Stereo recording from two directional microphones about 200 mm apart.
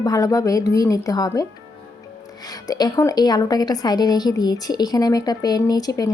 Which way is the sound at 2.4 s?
20° left (ahead or behind).